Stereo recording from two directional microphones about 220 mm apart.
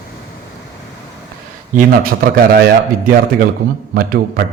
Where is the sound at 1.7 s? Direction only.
40° right (ahead or behind).